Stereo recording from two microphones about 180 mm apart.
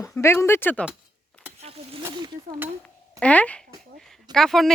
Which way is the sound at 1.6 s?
30° right (ahead or behind).